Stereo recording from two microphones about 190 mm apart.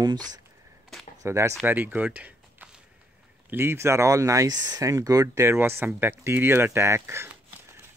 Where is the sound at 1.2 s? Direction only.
15° right (ahead or behind).